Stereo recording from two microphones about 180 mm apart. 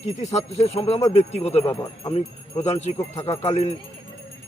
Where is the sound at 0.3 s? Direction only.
35° left (ahead or behind).